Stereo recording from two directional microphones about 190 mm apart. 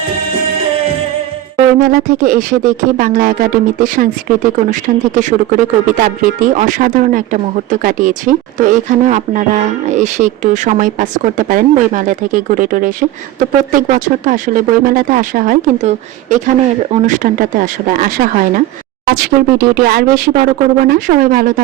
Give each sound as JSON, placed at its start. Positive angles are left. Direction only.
{"t": 1.5, "sound": "speech", "side_deg": -50}